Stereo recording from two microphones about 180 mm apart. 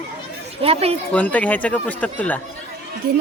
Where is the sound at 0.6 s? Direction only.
35° right (ahead or behind).